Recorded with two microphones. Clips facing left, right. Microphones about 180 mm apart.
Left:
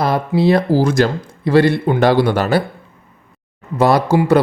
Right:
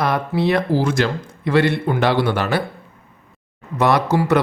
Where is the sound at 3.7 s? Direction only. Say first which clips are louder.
Left 3 dB; 30° left (ahead or behind).